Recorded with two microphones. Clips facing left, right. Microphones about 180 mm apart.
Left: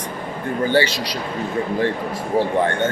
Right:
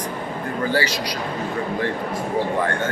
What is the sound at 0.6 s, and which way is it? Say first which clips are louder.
Speech: left 4 dB; 25° left (ahead or behind).